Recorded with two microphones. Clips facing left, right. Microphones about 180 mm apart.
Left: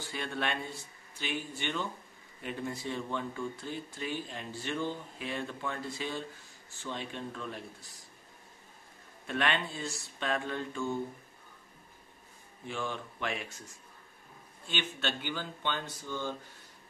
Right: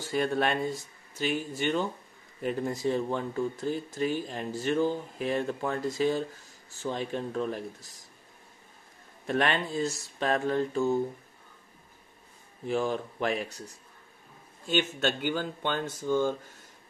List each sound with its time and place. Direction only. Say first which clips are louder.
0.0 s speech: right 8 dB; 45° right (ahead or behind)
6.8 s mantra: right 7 dB; 40° right (ahead or behind)
9.3 s mantra: right 5 dB; 40° right (ahead or behind)
12.6 s mantra: right 9 dB; 40° right (ahead or behind)
14.7 s speech: right 8 dB; 45° right (ahead or behind)